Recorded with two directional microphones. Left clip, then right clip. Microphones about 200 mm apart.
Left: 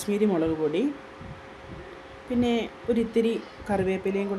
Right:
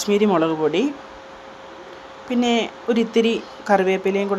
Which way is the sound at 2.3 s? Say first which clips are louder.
Right 6 dB; centre (ahead or behind).